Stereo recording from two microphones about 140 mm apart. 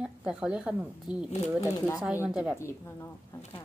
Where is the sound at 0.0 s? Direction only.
5° right (ahead or behind).